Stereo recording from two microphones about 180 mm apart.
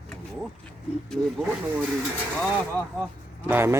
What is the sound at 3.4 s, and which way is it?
Speech, 10° right (ahead or behind).